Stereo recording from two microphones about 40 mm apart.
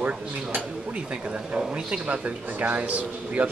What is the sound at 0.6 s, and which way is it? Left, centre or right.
A man's voice, right.